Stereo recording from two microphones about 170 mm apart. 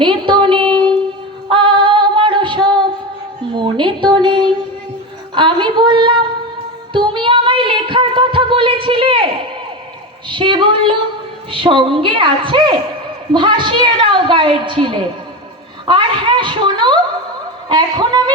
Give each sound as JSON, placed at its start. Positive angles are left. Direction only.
{"t": 0.0, "sound": "a sound", "side_deg": -30}
{"t": 1.5, "sound": "music", "side_deg": -30}
{"t": 3.5, "sound": "a woman's voice", "side_deg": -30}
{"t": 6.9, "sound": "music", "side_deg": -30}
{"t": 10.2, "sound": "a woman's voice", "side_deg": -30}
{"t": 15.9, "sound": "a sound", "side_deg": -30}